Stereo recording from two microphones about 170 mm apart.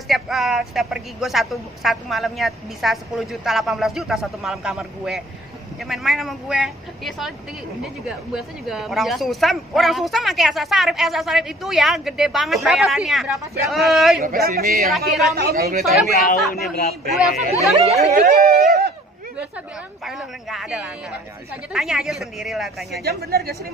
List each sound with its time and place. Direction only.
0.1 s speech: centre (ahead or behind)
14.2 s speech: 60° right (ahead or behind)
14.9 s speech: centre (ahead or behind)
15.3 s speech: 65° right (ahead or behind)
16.3 s speech: 65° left (ahead or behind)
17.4 s speech: 40° right (ahead or behind)
18.0 s speech: 65° right (ahead or behind)
20.1 s speech: centre (ahead or behind)
23.0 s speech: 65° right (ahead or behind)